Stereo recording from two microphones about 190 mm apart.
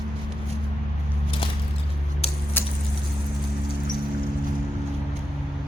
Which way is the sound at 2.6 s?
10° left (ahead or behind).